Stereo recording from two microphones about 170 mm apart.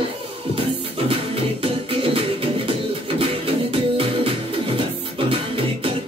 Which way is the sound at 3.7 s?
30° right (ahead or behind).